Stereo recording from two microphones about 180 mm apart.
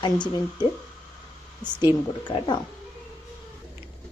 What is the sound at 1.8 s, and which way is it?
Speech, 25° left (ahead or behind).